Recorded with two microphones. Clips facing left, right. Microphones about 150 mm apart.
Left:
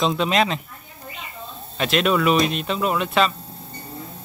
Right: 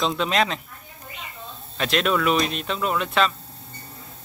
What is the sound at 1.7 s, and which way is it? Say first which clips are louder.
Speech: left 2 dB; 5° left (ahead or behind).